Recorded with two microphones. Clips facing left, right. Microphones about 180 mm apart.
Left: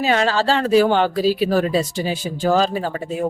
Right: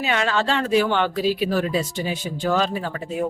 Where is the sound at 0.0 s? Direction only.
35° left (ahead or behind).